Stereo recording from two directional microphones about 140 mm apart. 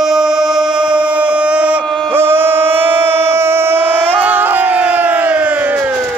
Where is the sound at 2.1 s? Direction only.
15° right (ahead or behind).